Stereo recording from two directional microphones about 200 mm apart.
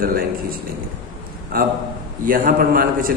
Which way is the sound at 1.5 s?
45° right (ahead or behind).